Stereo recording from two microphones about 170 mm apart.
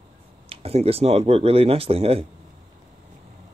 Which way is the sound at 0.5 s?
35° right (ahead or behind).